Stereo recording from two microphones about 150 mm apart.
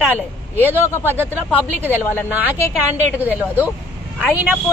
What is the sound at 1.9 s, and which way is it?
Speech, 15° left (ahead or behind).